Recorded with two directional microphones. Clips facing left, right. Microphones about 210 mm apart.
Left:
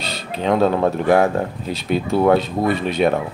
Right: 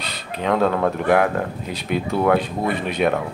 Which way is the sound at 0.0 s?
30° left (ahead or behind).